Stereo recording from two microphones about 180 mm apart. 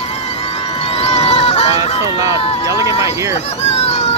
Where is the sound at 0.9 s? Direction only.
35° left (ahead or behind).